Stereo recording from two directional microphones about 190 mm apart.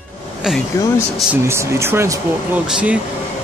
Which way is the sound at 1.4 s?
15° right (ahead or behind).